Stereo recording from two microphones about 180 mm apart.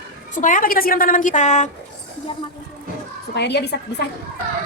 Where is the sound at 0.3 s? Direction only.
45° left (ahead or behind).